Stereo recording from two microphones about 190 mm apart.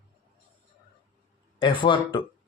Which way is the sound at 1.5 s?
25° left (ahead or behind).